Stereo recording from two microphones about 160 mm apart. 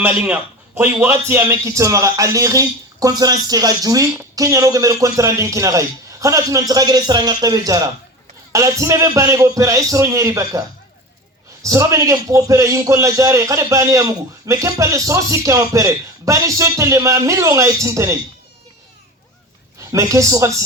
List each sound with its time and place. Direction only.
0.0 s a man's voice: 10° right (ahead or behind)
11.6 s a man's voice: 20° right (ahead or behind)
19.8 s a woman's voice: 20° right (ahead or behind)